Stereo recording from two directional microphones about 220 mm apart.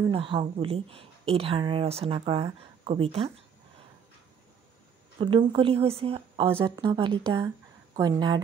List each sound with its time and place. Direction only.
0.1 s a woman's voice: 25° right (ahead or behind)
5.2 s a woman's voice: 20° right (ahead or behind)